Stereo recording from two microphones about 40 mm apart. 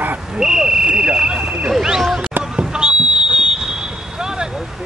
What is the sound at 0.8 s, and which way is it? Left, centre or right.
Speech, right.